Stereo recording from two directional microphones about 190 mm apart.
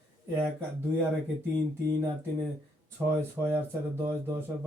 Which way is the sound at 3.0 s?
10° right (ahead or behind).